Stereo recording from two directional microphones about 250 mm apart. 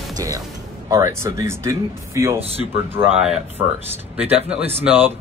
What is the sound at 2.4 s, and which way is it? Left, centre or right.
Speech, right.